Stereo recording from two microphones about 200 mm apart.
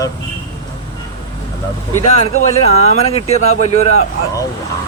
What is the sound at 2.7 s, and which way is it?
Speech, 30° left (ahead or behind).